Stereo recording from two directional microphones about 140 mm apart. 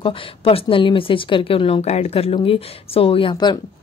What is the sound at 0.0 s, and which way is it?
Speech, 40° left (ahead or behind).